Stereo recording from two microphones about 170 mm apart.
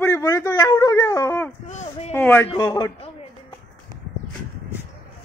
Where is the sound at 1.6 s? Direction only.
45° left (ahead or behind).